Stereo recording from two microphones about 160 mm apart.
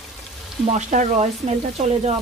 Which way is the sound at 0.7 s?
50° right (ahead or behind).